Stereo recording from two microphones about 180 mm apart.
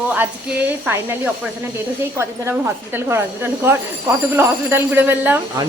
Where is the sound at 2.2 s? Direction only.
10° right (ahead or behind).